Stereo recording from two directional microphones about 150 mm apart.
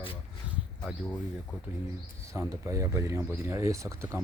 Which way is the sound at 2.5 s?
20° right (ahead or behind).